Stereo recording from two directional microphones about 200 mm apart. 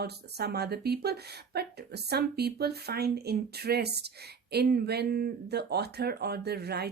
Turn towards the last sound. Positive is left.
turn(degrees=-55)  # may be behind; listen again after turning